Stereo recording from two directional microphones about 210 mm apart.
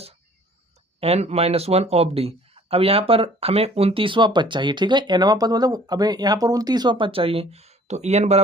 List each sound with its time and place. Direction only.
0.9 s speech: 30° right (ahead or behind)